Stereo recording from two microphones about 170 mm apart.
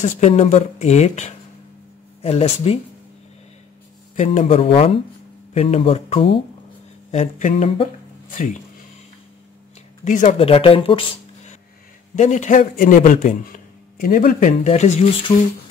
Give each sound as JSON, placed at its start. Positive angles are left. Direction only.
{"t": 0.0, "sound": "speech", "side_deg": 40}
{"t": 4.2, "sound": "a man's voice", "side_deg": 40}
{"t": 10.0, "sound": "a man's voice", "side_deg": 50}
{"t": 10.4, "sound": "speech", "side_deg": 35}
{"t": 12.2, "sound": "a man's voice", "side_deg": 45}